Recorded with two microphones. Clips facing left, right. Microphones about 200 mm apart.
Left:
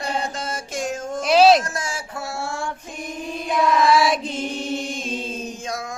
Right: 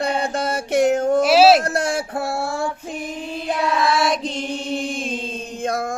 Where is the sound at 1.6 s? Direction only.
60° right (ahead or behind).